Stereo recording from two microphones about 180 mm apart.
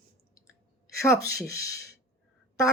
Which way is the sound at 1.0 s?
15° left (ahead or behind).